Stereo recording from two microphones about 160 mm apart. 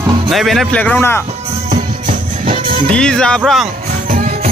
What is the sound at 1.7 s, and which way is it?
Music, 50° right (ahead or behind).